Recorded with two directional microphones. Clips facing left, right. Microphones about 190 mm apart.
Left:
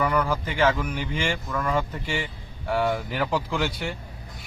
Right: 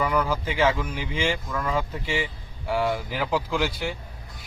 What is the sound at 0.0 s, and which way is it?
Speech, 5° right (ahead or behind).